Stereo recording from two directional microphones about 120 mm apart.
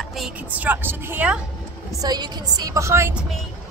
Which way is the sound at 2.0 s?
35° right (ahead or behind).